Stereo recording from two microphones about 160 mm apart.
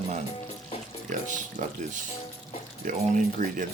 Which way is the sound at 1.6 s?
55° right (ahead or behind).